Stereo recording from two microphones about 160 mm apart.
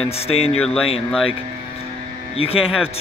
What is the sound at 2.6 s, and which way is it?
Speech, 5° right (ahead or behind).